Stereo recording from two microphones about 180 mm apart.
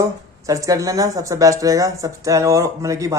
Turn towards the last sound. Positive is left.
turn(degrees=-20)  # may be behind; listen again after turning